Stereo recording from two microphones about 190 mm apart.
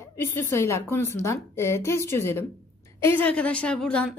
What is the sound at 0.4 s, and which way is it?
A woman's voice, 15° left (ahead or behind).